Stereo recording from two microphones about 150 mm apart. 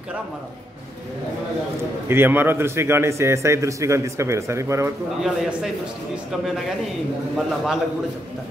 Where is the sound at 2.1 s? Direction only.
15° right (ahead or behind).